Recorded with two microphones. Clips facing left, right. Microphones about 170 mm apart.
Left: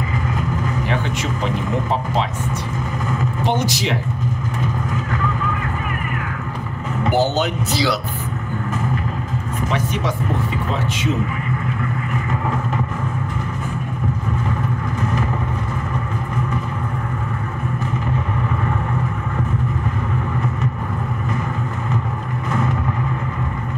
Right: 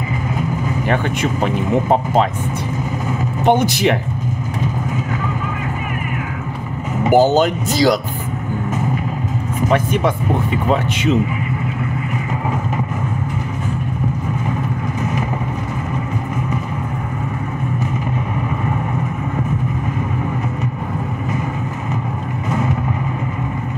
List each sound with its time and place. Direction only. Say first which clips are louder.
0.8 s speech: right 4 dB; 50° right (ahead or behind)
3.4 s speech: right 8 dB; 55° right (ahead or behind)
7.1 s speech: right 6 dB; 45° right (ahead or behind)